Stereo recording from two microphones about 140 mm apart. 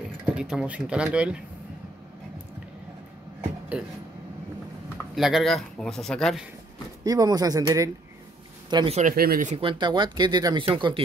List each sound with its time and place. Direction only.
0.3 s speech: 5° right (ahead or behind)
5.1 s speech: centre (ahead or behind)
7.1 s speech: 25° right (ahead or behind)
8.9 s speech: 80° right
9.6 s speech: 35° right (ahead or behind)